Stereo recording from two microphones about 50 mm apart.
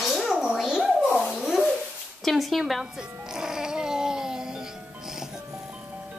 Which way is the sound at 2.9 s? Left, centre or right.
Centre.